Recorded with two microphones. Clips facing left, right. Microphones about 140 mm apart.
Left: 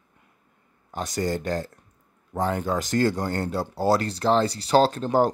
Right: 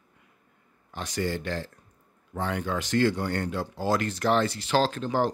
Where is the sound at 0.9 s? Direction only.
40° left (ahead or behind).